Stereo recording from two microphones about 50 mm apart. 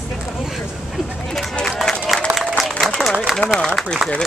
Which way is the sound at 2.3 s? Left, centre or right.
Centre.